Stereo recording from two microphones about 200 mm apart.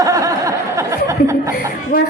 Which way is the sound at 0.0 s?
15° right (ahead or behind).